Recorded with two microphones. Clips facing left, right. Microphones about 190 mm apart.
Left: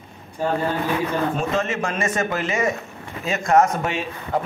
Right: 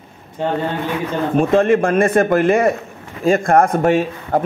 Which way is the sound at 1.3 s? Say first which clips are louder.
Right 10 dB; 55° right (ahead or behind).